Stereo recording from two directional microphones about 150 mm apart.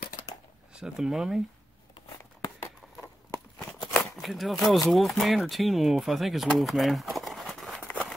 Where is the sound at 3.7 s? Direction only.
Centre (ahead or behind).